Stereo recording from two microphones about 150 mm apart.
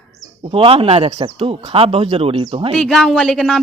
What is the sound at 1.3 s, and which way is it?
Speech, 40° right (ahead or behind).